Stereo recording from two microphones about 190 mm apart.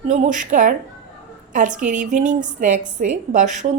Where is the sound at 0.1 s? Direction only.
40° right (ahead or behind).